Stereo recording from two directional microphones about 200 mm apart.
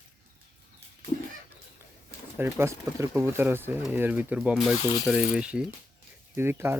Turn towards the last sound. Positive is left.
turn(degrees=-10)  # may be behind; listen again after turning